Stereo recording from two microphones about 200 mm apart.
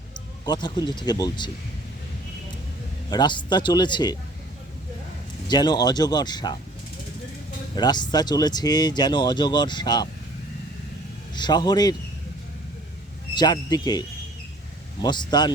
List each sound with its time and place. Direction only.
0.4 s speech: 20° left (ahead or behind)
3.1 s speech: 20° left (ahead or behind)
5.5 s speech: 20° left (ahead or behind)
7.8 s speech: 20° left (ahead or behind)
11.3 s speech: 20° left (ahead or behind)
13.3 s speech: 20° left (ahead or behind)
15.0 s speech: 20° left (ahead or behind)